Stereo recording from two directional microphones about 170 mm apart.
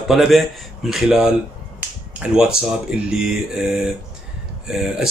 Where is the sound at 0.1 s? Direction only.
Centre (ahead or behind).